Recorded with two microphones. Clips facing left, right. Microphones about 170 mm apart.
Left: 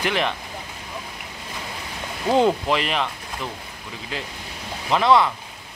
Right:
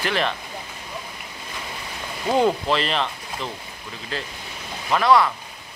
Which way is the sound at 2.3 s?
15° left (ahead or behind).